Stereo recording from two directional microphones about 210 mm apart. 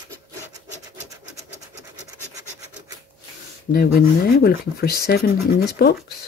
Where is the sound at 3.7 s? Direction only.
50° left (ahead or behind).